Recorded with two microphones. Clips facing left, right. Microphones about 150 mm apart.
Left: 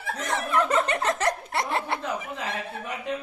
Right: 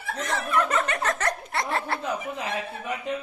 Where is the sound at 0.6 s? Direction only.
25° left (ahead or behind).